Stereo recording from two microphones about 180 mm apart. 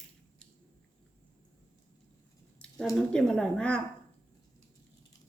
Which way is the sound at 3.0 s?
5° left (ahead or behind).